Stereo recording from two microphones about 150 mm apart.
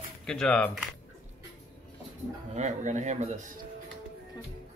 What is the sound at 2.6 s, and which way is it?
Speech, 50° right (ahead or behind).